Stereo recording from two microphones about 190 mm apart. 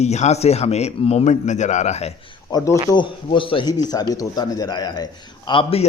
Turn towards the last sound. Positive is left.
turn(degrees=30)  # may be behind; listen again after turning